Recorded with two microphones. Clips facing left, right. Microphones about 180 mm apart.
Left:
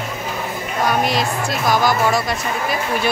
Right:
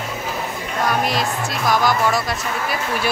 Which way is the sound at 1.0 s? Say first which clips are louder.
Left 2 dB; centre (ahead or behind).